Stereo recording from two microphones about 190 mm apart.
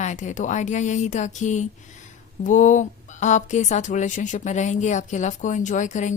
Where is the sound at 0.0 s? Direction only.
40° left (ahead or behind).